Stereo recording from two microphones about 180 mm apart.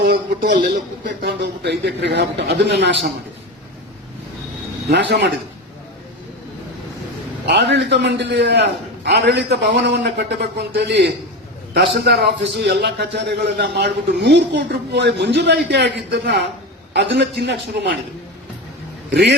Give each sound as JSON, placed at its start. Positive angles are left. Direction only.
{"t": 0.0, "sound": "a man's voice", "side_deg": -50}
{"t": 1.2, "sound": "a man's voice", "side_deg": -70}
{"t": 4.9, "sound": "a man's voice", "side_deg": -75}
{"t": 7.4, "sound": "a man's voice", "side_deg": -70}